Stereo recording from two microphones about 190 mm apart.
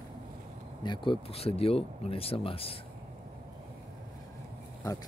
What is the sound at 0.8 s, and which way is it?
Speech, 25° left (ahead or behind).